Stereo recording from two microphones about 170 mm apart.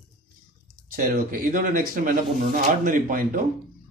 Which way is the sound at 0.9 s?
55° right (ahead or behind).